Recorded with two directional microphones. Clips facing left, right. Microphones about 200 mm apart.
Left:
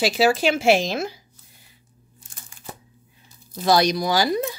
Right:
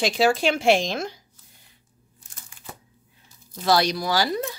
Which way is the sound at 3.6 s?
15° left (ahead or behind).